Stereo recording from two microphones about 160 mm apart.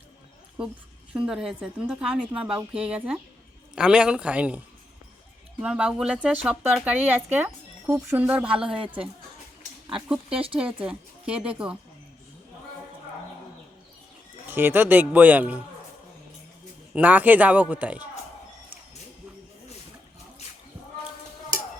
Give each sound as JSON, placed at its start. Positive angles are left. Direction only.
{"t": 1.1, "sound": "a woman's voice", "side_deg": -5}
{"t": 5.6, "sound": "speech", "side_deg": -5}
{"t": 8.7, "sound": "a woman's voice", "side_deg": -35}
{"t": 9.9, "sound": "a woman's voice", "side_deg": -5}
{"t": 14.4, "sound": "speech", "side_deg": -10}
{"t": 16.9, "sound": "speech", "side_deg": -10}